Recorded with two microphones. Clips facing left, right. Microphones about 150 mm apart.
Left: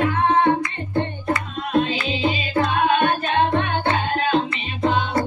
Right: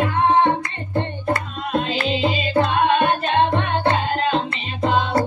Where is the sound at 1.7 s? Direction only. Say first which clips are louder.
Left 1 dB; 30° right (ahead or behind).